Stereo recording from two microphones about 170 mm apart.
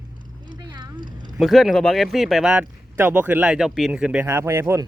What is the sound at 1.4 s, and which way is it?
Speech, centre (ahead or behind).